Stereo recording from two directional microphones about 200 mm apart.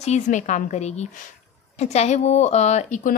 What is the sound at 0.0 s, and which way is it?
A woman's voice, 35° left (ahead or behind).